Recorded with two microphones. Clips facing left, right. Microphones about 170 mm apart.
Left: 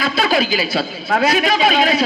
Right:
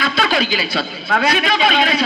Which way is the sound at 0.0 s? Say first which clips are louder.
Left 1 dB; 40° left (ahead or behind).